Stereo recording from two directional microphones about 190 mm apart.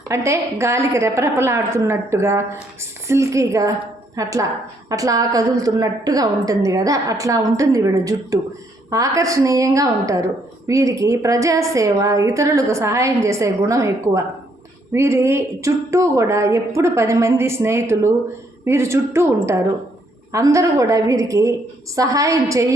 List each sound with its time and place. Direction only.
0.1 s a woman's voice: 15° right (ahead or behind)